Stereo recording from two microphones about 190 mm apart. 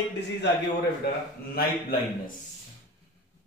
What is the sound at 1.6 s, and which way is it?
Speech, 50° left (ahead or behind).